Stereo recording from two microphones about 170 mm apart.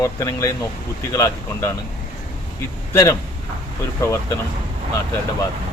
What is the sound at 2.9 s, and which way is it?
Speech, 20° left (ahead or behind).